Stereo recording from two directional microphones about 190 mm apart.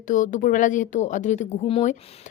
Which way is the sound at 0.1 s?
45° left (ahead or behind).